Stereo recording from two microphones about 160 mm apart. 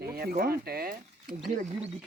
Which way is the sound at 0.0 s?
75° right (ahead or behind).